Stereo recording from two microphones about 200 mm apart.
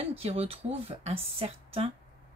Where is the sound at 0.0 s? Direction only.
30° right (ahead or behind).